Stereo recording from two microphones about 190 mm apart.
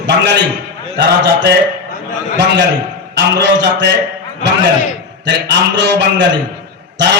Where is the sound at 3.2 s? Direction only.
65° right (ahead or behind).